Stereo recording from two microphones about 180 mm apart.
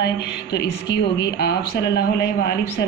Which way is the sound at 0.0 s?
65° left (ahead or behind).